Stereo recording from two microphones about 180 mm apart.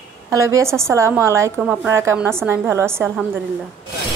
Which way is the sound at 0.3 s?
15° right (ahead or behind).